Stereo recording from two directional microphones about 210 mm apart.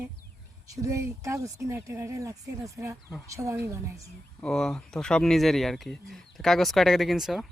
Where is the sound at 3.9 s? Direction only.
Centre (ahead or behind).